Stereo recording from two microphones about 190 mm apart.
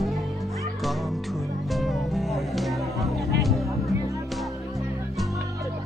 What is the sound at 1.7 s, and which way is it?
Music, centre (ahead or behind).